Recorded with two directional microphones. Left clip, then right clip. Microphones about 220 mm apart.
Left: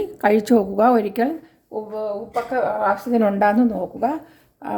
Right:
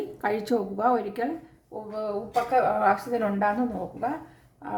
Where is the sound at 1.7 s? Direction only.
35° left (ahead or behind).